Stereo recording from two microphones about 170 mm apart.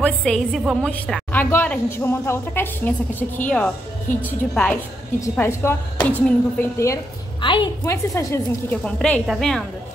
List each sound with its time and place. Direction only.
0.0 s a woman's voice: 5° left (ahead or behind)
7.4 s a woman's voice: 30° left (ahead or behind)
7.8 s a woman's voice: 20° left (ahead or behind)
8.8 s a woman's voice: 5° left (ahead or behind)